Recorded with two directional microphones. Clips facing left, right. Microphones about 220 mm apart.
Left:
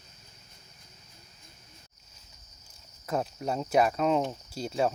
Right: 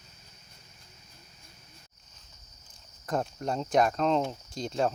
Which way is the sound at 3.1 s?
5° left (ahead or behind).